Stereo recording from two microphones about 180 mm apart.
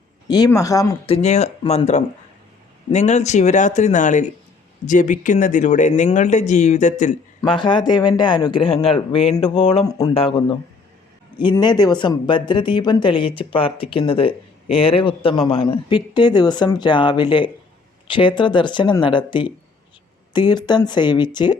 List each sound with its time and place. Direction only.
0.3 s speech: 20° left (ahead or behind)
1.0 s speech: 35° left (ahead or behind)
7.4 s speech: 25° left (ahead or behind)
10.2 s speech: 30° left (ahead or behind)
11.5 s speech: 25° left (ahead or behind)